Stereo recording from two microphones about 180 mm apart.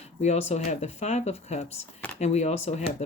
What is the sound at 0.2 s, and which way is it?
Speech, 35° left (ahead or behind).